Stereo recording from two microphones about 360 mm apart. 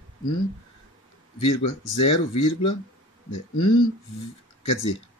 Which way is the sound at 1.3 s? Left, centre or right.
Left.